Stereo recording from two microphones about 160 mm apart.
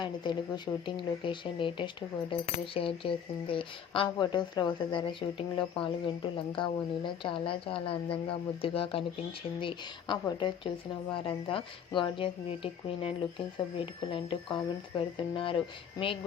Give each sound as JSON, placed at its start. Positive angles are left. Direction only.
{"t": 0.0, "sound": "speech", "side_deg": 30}